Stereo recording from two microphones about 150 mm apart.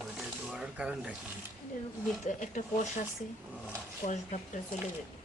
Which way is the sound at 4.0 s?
50° left (ahead or behind).